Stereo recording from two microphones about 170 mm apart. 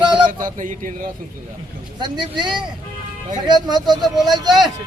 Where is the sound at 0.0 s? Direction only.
25° right (ahead or behind).